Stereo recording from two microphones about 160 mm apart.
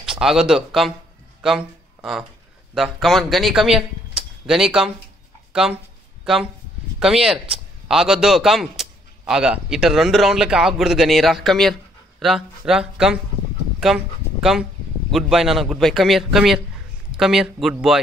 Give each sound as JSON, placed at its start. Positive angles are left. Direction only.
{"t": 0.0, "sound": "speech", "side_deg": -5}
{"t": 2.7, "sound": "speech", "side_deg": 0}
{"t": 7.0, "sound": "a man's voice", "side_deg": -5}